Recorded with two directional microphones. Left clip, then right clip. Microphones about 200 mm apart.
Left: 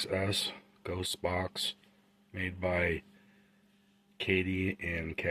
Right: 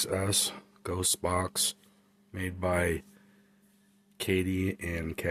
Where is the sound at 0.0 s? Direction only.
25° right (ahead or behind).